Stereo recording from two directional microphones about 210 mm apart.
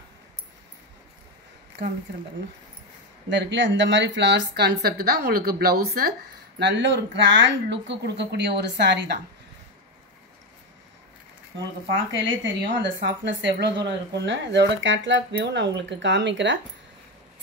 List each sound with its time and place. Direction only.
3.3 s a woman's voice: 55° right (ahead or behind)
6.6 s speech: 55° right (ahead or behind)
12.3 s speech: 60° right (ahead or behind)